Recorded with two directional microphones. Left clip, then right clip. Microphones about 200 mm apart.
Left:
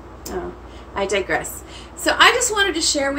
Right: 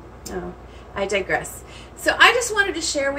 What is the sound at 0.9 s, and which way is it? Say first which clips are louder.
A woman's voice: left 1 dB; 15° left (ahead or behind).